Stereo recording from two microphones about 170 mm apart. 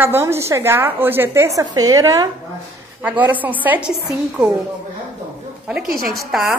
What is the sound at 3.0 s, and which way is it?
A woman's voice, 10° right (ahead or behind).